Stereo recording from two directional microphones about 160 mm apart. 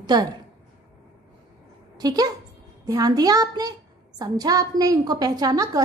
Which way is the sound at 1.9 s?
25° right (ahead or behind).